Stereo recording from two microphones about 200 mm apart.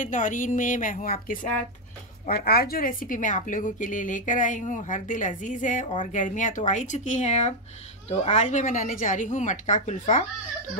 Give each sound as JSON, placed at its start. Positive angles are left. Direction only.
{"t": 0.0, "sound": "a woman's voice", "side_deg": 40}